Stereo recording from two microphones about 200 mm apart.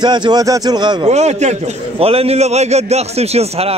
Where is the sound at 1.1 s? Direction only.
35° right (ahead or behind).